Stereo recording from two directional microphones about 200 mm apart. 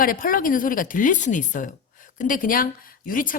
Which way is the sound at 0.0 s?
45° left (ahead or behind).